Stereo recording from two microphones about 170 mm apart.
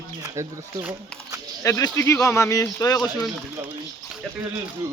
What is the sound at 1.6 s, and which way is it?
Speech, 20° left (ahead or behind).